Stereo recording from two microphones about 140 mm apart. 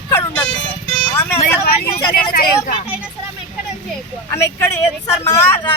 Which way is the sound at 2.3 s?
90° left.